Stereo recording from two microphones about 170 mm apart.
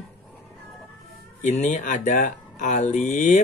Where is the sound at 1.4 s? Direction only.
45° left (ahead or behind).